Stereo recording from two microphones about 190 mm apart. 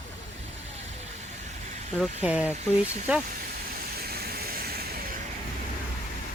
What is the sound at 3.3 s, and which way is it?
Vehicle, 55° right (ahead or behind).